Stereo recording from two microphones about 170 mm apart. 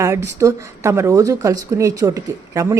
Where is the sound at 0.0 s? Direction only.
15° right (ahead or behind).